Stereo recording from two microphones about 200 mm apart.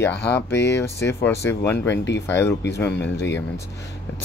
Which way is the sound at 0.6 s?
60° left (ahead or behind).